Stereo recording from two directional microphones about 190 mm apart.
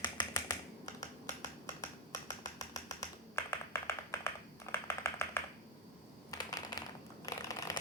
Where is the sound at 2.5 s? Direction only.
20° left (ahead or behind).